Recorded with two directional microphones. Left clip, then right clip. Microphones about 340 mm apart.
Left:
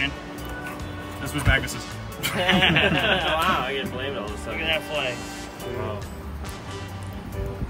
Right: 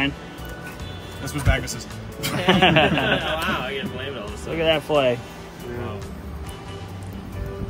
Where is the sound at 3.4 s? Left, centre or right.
Left.